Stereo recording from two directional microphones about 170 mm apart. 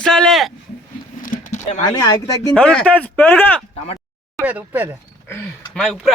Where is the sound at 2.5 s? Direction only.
5° left (ahead or behind).